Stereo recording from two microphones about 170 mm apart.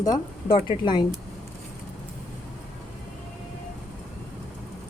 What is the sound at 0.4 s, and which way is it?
Speech, 30° left (ahead or behind).